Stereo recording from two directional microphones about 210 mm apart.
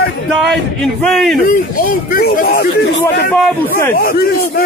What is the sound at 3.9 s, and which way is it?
Speech, 45° left (ahead or behind).